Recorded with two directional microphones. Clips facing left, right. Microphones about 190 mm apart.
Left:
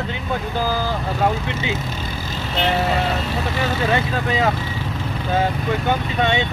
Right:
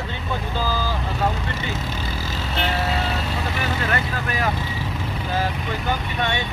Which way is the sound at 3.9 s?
20° left (ahead or behind).